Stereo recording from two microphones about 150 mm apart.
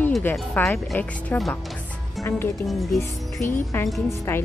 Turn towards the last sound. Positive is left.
turn(degrees=15)  # may be behind; listen again after turning